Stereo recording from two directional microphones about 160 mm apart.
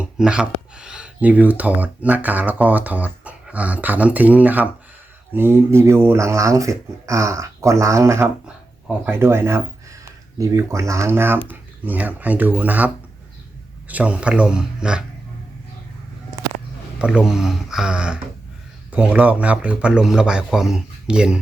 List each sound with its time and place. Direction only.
0.2 s speech: 5° right (ahead or behind)
17.0 s speech: 5° right (ahead or behind)